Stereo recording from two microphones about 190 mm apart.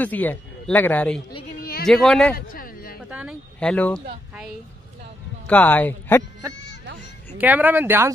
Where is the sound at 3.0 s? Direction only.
5° right (ahead or behind).